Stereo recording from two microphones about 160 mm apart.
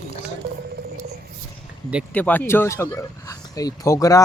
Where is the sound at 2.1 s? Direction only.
10° left (ahead or behind).